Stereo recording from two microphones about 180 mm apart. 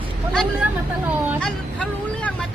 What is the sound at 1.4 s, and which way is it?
Speech, 5° left (ahead or behind).